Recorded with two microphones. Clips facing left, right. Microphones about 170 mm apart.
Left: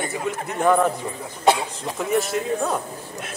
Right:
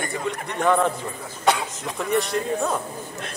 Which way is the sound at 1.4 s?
30° left (ahead or behind).